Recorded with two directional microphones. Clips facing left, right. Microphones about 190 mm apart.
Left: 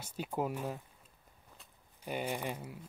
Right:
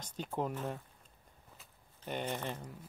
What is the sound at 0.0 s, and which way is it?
Speech, 10° left (ahead or behind).